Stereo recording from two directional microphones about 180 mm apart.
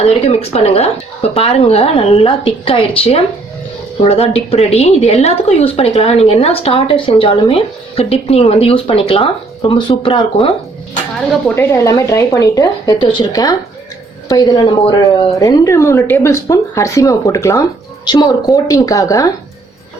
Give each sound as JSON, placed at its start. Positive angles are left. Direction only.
{"t": 0.0, "sound": "speech", "side_deg": 35}
{"t": 11.4, "sound": "a woman's voice", "side_deg": 15}